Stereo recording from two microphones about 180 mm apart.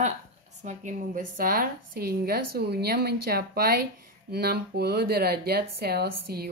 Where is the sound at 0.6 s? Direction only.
45° right (ahead or behind).